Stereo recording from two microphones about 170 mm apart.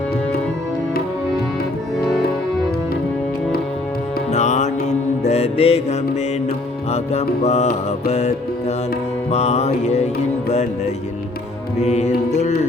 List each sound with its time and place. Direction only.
4.3 s music: 45° left (ahead or behind)